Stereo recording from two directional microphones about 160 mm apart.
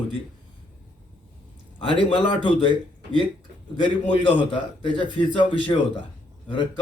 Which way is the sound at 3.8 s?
30° left (ahead or behind).